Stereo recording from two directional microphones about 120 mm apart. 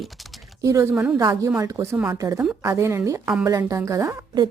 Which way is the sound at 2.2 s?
30° right (ahead or behind).